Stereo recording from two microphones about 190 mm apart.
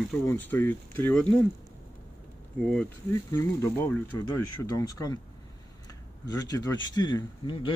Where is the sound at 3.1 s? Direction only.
15° left (ahead or behind).